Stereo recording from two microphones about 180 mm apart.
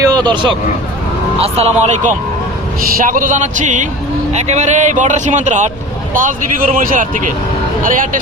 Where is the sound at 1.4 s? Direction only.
35° right (ahead or behind).